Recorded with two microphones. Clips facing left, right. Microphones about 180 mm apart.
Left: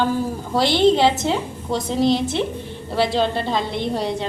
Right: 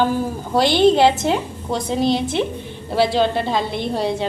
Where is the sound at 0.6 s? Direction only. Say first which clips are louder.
Right 2 dB; 25° left (ahead or behind).